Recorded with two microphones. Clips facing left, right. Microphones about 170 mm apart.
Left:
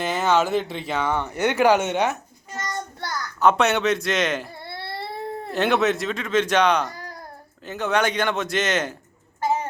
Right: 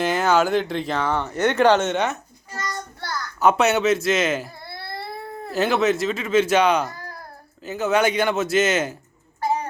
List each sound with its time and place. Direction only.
0.0 s speech: centre (ahead or behind)
3.4 s speech: 5° right (ahead or behind)
4.6 s baby cry: 25° left (ahead or behind)
5.5 s a man's voice: centre (ahead or behind)
9.4 s a sound: 25° left (ahead or behind)